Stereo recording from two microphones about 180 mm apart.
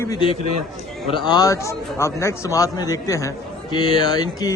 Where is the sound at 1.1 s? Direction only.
25° left (ahead or behind).